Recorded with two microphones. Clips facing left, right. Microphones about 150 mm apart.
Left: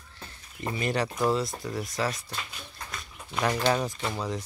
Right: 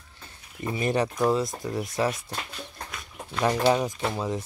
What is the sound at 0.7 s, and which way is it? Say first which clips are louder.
Speech: right 3 dB; 20° right (ahead or behind).